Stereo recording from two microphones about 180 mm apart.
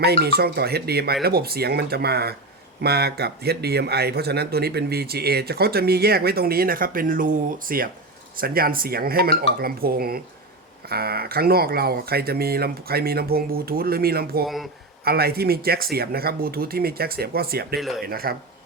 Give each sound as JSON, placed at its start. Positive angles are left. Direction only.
{"t": 0.0, "sound": "a man's voice", "side_deg": -60}
{"t": 14.4, "sound": "speech", "side_deg": 0}
{"t": 15.0, "sound": "a man's voice", "side_deg": -60}
{"t": 17.7, "sound": "speech", "side_deg": 0}
{"t": 18.0, "sound": "a man's voice", "side_deg": -55}